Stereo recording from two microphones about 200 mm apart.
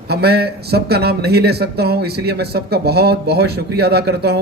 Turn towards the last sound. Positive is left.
turn(degrees=-55)  # may be behind; listen again after turning